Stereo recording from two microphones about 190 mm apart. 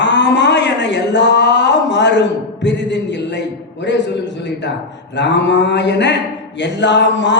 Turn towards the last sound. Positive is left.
turn(degrees=65)  # may be behind; listen again after turning